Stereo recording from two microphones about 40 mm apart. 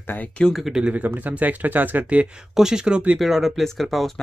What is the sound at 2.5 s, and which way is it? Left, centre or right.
Speech, centre.